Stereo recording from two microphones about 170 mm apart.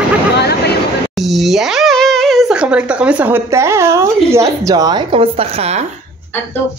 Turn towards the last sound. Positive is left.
turn(degrees=-35)  # may be behind; listen again after turning